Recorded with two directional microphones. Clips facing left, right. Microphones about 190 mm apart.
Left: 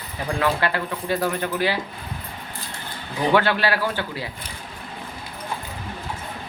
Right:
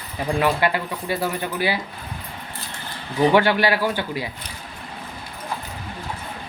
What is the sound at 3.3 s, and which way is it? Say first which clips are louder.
Speech: left 1 dB; 15° right (ahead or behind).